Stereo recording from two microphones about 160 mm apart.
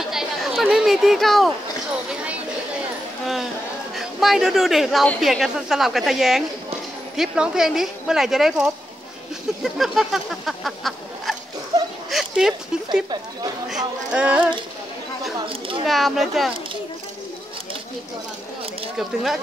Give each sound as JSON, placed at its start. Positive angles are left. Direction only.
{"t": 0.1, "sound": "a sound", "side_deg": 0}
{"t": 3.9, "sound": "a woman's voice", "side_deg": 0}
{"t": 15.3, "sound": "a woman's voice", "side_deg": -30}
{"t": 15.9, "sound": "a woman's voice", "side_deg": 0}
{"t": 18.9, "sound": "a woman's voice", "side_deg": 0}